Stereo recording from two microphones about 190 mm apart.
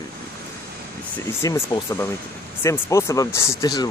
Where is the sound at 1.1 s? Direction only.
15° left (ahead or behind).